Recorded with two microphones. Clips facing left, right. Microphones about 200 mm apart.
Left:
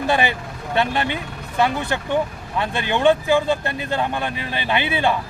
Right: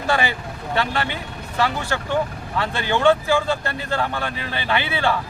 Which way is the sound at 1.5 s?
20° left (ahead or behind).